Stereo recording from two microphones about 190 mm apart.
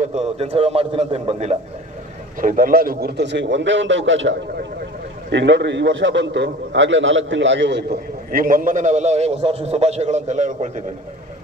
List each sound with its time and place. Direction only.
0.4 s a man's voice: 30° right (ahead or behind)
2.4 s a man's voice: 45° right (ahead or behind)